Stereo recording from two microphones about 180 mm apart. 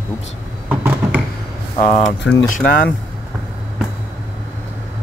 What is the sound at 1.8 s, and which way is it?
Speech, 40° left (ahead or behind).